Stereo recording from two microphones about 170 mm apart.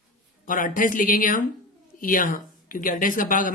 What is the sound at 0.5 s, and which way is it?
Speech, 50° left (ahead or behind).